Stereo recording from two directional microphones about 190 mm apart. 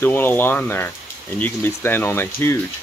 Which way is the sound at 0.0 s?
10° left (ahead or behind).